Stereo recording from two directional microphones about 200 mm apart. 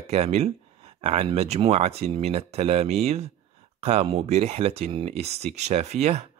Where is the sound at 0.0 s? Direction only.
30° right (ahead or behind).